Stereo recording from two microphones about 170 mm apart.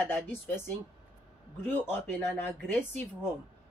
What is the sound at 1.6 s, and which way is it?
A woman's voice, 10° left (ahead or behind).